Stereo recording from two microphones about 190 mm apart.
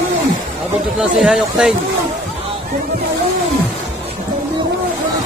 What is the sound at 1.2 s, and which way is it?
Speech, 5° right (ahead or behind).